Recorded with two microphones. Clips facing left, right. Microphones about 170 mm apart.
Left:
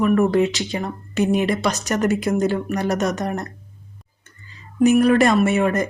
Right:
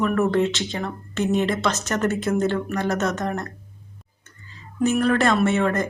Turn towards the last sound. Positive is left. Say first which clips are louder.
# left 2 dB
turn(degrees=15)  # may be behind; listen again after turning